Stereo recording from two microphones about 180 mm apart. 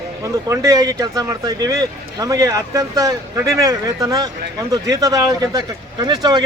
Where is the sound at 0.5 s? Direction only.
20° right (ahead or behind).